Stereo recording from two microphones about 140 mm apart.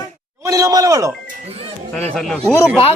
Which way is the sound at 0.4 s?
25° right (ahead or behind).